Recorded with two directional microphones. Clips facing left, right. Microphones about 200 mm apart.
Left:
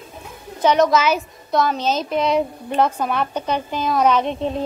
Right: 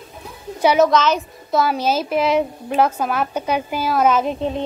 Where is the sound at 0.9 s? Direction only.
10° left (ahead or behind).